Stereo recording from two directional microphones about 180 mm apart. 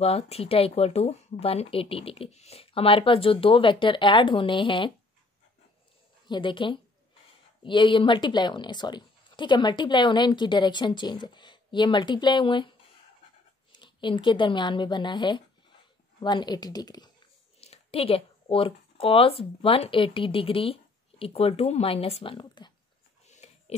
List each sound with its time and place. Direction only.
0.0 s speech: 35° left (ahead or behind)
6.2 s a woman's voice: 25° left (ahead or behind)
17.6 s speech: 35° left (ahead or behind)
23.2 s a sound: 40° left (ahead or behind)